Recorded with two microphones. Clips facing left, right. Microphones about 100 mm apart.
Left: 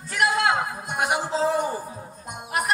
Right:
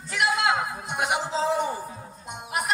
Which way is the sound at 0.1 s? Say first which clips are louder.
Left 2 dB; 45° left (ahead or behind).